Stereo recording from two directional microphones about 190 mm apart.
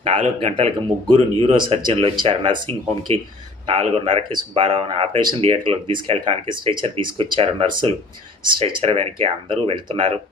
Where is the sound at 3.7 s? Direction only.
35° right (ahead or behind).